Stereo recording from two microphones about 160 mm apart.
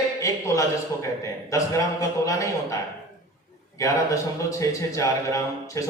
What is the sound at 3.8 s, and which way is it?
A man's voice, 20° left (ahead or behind).